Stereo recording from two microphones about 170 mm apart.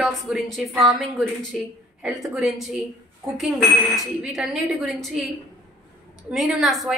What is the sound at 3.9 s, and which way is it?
A woman's voice, centre (ahead or behind).